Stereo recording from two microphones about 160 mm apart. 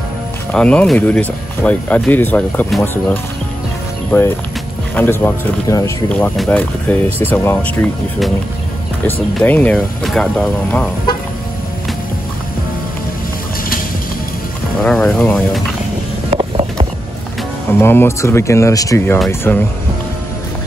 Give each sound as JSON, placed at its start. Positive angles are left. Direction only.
{"t": 0.5, "sound": "speech", "side_deg": 10}
{"t": 9.3, "sound": "speech", "side_deg": 10}
{"t": 14.8, "sound": "speech", "side_deg": 5}
{"t": 17.7, "sound": "speech", "side_deg": 15}